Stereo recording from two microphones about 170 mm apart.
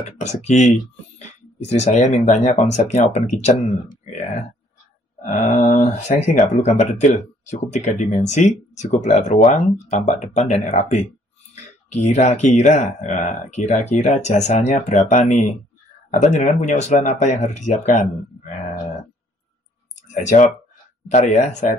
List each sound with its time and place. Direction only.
0.0 s speech: 40° left (ahead or behind)
5.2 s speech: 50° left (ahead or behind)
20.0 s a sound: 45° left (ahead or behind)
21.1 s speech: 45° left (ahead or behind)